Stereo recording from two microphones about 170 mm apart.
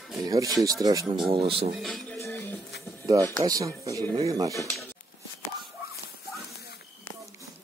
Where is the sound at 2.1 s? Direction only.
15° left (ahead or behind).